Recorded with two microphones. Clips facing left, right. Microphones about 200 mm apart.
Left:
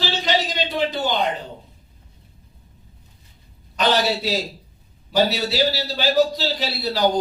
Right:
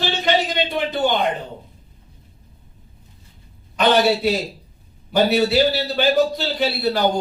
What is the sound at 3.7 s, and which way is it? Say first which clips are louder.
Speech: right 4 dB; 55° right (ahead or behind).